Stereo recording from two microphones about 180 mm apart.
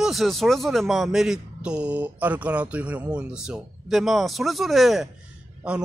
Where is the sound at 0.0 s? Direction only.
Centre (ahead or behind).